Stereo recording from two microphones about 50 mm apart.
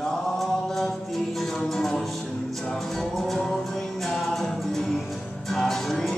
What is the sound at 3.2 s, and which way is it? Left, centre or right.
Music, centre.